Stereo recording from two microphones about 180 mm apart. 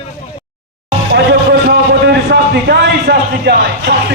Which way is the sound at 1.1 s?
65° right (ahead or behind).